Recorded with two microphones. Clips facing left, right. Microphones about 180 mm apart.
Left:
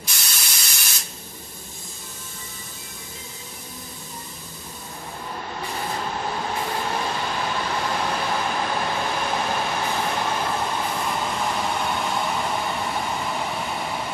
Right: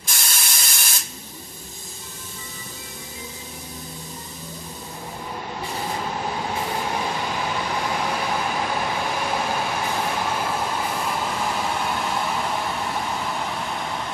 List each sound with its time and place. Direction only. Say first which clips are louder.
0.0 s spray: right 3 dB; 45° right (ahead or behind)
5.9 s vehicle: even; 10° right (ahead or behind)